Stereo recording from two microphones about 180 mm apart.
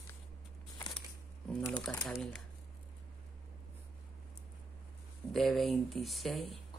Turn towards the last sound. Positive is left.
turn(degrees=0)  # may be behind; listen again after turning